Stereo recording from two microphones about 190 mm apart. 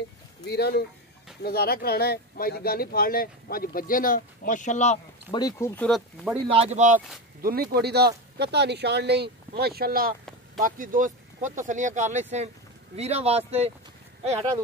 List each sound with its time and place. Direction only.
0.5 s speech: 60° left (ahead or behind); by 4.9 s 40° left (ahead or behind)
5.3 s speech: 20° left (ahead or behind)
5.8 s speech: centre (ahead or behind)
6.4 s speech: 30° right (ahead or behind)
7.4 s speech: 50° right (ahead or behind); by 13.4 s 35° right (ahead or behind)
14.3 s speech: 20° right (ahead or behind)